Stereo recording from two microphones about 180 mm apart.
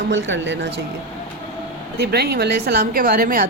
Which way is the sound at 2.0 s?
60° right (ahead or behind).